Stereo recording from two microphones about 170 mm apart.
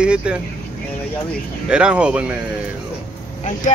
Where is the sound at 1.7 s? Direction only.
5° right (ahead or behind).